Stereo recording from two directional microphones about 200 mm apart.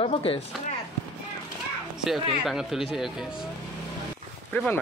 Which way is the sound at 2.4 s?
Centre (ahead or behind).